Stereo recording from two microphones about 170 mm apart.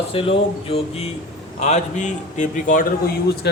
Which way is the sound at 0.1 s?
35° left (ahead or behind).